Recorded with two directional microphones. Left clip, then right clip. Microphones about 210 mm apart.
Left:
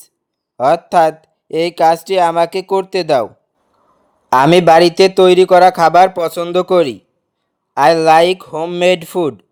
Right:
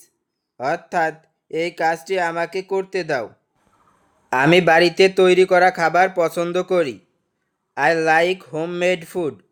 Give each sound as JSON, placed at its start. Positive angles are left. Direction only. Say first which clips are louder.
{"t": 0.5, "sound": "speech", "louder": "left 10 dB", "side_deg": 30}
{"t": 4.3, "sound": "speech", "louder": "left 6 dB", "side_deg": 25}